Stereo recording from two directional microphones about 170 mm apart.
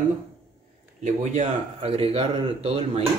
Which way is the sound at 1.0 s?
45° right (ahead or behind).